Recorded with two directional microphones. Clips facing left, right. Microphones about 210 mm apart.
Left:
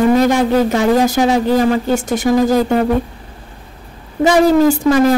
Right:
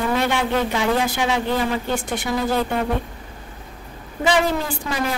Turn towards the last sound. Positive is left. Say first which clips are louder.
# left 14 dB
turn(degrees=45)  # may be behind; listen again after turning